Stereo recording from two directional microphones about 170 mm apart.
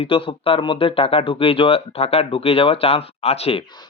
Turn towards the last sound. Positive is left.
turn(degrees=35)  # may be behind; listen again after turning